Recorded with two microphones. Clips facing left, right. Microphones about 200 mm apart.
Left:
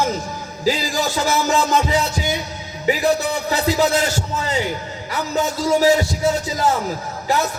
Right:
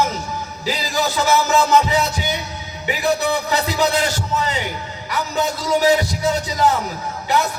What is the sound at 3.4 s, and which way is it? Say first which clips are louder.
Music: left 2 dB; 40° left (ahead or behind).